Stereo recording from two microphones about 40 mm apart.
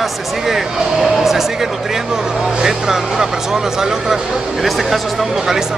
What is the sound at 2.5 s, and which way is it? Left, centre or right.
Speech, centre.